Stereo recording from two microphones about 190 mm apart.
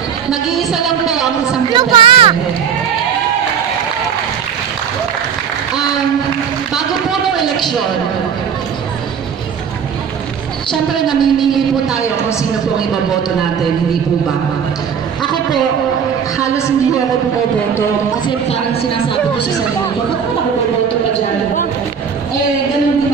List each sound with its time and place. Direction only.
0.3 s speech: centre (ahead or behind)
1.7 s speech: 25° right (ahead or behind)
6.7 s run: centre (ahead or behind)
10.7 s a woman's voice: 20° left (ahead or behind)
11.3 s speech: centre (ahead or behind)
16.3 s a woman's voice: 15° left (ahead or behind)